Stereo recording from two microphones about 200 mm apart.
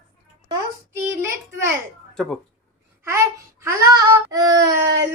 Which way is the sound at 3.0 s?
15° right (ahead or behind).